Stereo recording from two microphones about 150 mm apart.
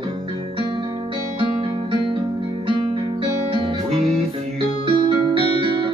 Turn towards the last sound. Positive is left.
turn(degrees=-35)  # may be behind; listen again after turning